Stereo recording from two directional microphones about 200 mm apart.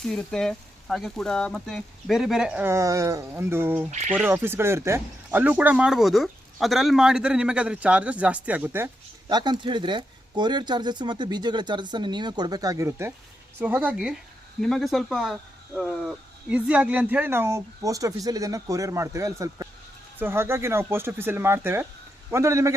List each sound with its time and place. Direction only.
0.0 s speech: 5° left (ahead or behind)
9.3 s speech: 20° right (ahead or behind)